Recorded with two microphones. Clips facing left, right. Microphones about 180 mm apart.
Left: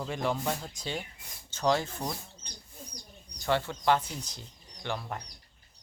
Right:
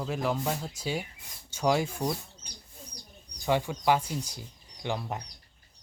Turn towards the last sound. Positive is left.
turn(degrees=-15)  # may be behind; listen again after turning